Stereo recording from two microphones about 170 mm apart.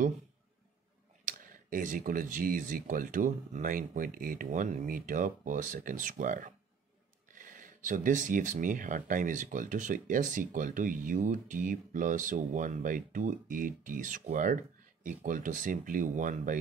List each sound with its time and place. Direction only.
1.2 s speech: 50° right (ahead or behind)